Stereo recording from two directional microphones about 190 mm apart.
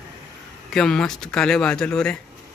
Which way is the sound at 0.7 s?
5° left (ahead or behind).